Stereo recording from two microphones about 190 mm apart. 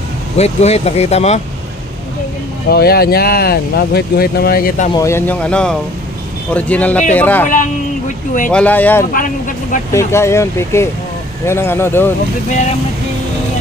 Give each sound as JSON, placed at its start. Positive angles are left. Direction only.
{"t": 0.4, "sound": "speech", "side_deg": 35}
{"t": 2.7, "sound": "speech", "side_deg": 55}
{"t": 4.9, "sound": "speech", "side_deg": 15}
{"t": 8.5, "sound": "speech", "side_deg": 5}
{"t": 9.1, "sound": "speech", "side_deg": 45}
{"t": 9.9, "sound": "speech", "side_deg": 15}